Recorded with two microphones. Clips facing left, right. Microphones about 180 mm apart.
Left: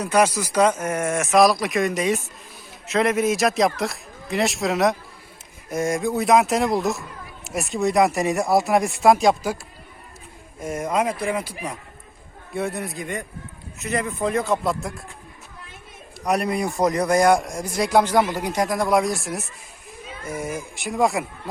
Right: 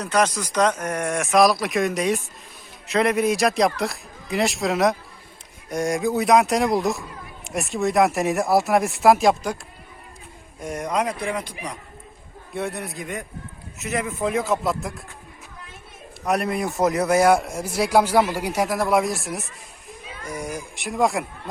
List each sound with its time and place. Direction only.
0.0 s speech: 10° left (ahead or behind)
10.6 s speech: centre (ahead or behind)
16.2 s speech: centre (ahead or behind)